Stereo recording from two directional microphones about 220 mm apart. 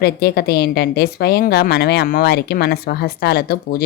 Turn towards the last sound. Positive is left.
turn(degrees=45)  # may be behind; listen again after turning